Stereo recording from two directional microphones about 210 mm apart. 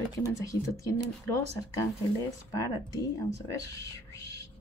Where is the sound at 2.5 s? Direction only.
15° left (ahead or behind).